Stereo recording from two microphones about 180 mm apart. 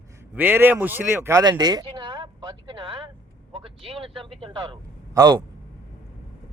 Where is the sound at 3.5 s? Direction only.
30° right (ahead or behind).